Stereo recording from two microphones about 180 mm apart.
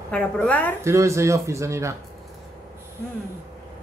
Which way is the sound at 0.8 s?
15° right (ahead or behind).